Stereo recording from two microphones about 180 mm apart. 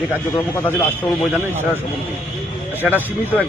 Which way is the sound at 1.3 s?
10° right (ahead or behind).